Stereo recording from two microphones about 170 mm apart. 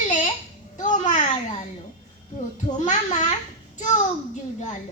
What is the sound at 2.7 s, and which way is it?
Speech, 45° left (ahead or behind).